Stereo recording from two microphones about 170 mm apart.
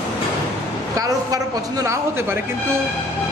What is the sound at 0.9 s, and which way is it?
A woman's voice, 20° right (ahead or behind).